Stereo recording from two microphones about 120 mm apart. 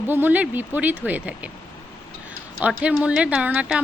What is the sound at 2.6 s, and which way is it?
Speech, 10° right (ahead or behind).